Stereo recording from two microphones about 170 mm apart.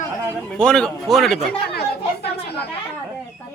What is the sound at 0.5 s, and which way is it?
Speech, 5° left (ahead or behind).